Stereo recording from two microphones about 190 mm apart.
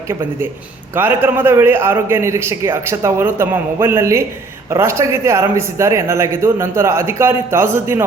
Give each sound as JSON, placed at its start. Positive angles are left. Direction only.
{"t": 0.9, "sound": "a man's voice", "side_deg": -10}